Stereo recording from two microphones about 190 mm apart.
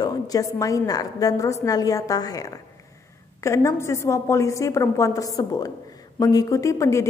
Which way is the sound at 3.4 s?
15° left (ahead or behind).